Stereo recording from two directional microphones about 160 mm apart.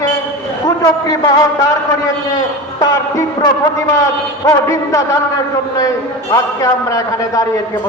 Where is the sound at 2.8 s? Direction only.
25° left (ahead or behind).